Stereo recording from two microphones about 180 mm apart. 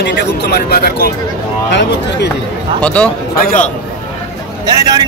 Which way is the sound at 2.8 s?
5° left (ahead or behind).